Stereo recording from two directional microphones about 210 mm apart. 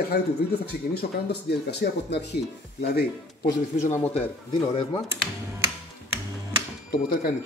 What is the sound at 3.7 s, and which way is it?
Speech, 35° left (ahead or behind).